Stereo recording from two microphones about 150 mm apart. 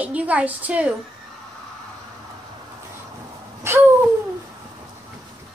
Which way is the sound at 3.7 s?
15° right (ahead or behind).